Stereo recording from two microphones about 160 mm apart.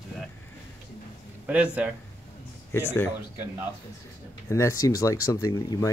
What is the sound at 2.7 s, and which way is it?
Speech, 15° left (ahead or behind).